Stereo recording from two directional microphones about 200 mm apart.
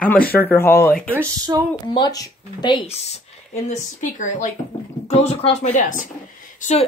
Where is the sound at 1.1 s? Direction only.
15° right (ahead or behind).